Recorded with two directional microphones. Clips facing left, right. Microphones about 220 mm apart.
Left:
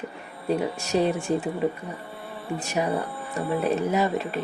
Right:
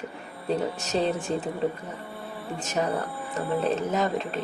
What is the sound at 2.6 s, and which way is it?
Speech, 10° left (ahead or behind).